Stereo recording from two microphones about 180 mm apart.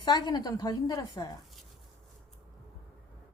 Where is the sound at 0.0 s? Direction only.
25° left (ahead or behind).